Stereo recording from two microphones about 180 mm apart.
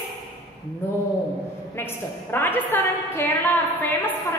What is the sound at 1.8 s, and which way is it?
A woman's voice, 10° left (ahead or behind).